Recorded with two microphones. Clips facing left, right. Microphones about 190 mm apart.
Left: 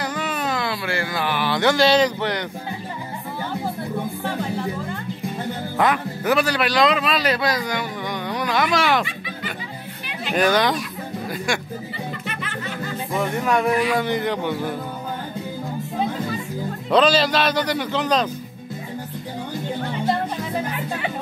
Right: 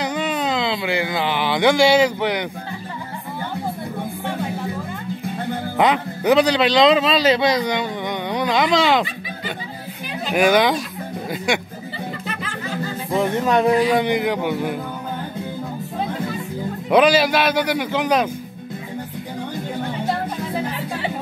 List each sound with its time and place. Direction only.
0.0 s speech: 20° right (ahead or behind)
5.8 s speech: 20° right (ahead or behind)
10.3 s speech: 10° right (ahead or behind)
13.1 s speech: 20° right (ahead or behind)
16.9 s speech: 10° right (ahead or behind)